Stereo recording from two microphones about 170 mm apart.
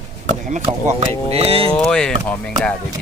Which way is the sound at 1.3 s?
35° right (ahead or behind).